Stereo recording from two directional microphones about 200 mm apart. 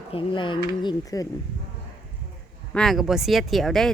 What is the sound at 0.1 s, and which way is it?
Speech, 25° left (ahead or behind).